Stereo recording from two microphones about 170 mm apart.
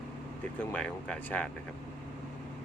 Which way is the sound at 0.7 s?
5° left (ahead or behind).